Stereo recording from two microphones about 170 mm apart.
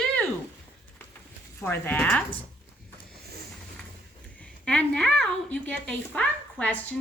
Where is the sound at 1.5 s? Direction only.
10° left (ahead or behind).